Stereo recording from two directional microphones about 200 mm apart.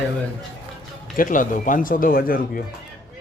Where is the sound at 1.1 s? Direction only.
40° left (ahead or behind).